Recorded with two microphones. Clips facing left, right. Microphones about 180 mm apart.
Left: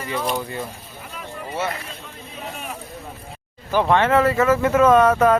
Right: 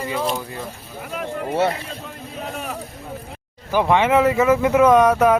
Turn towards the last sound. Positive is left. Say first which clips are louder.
# right 1 dB
turn(degrees=-15)  # may be behind; listen again after turning